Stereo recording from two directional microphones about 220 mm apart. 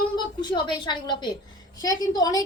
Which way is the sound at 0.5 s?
20° left (ahead or behind).